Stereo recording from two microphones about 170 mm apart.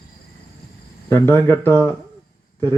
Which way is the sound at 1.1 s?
15° left (ahead or behind).